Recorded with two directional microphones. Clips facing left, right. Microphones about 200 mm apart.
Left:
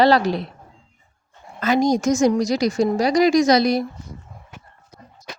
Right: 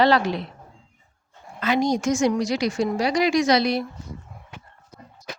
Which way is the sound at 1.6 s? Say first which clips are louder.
Left 3 dB; 45° left (ahead or behind).